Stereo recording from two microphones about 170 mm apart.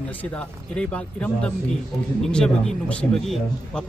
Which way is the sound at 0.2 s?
10° left (ahead or behind).